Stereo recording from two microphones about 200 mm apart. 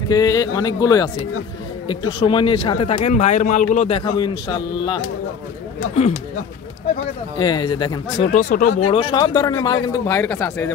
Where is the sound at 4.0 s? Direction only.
20° left (ahead or behind).